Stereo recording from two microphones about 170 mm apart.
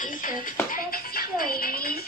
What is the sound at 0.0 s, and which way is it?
Music, 55° left (ahead or behind).